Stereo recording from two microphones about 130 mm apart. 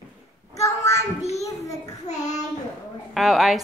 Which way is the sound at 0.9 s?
55° left (ahead or behind).